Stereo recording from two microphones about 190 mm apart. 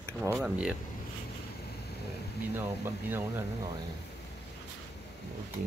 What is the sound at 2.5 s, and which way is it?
Speech, 10° right (ahead or behind).